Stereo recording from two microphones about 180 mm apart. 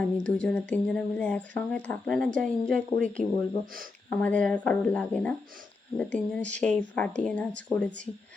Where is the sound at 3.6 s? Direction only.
50° right (ahead or behind).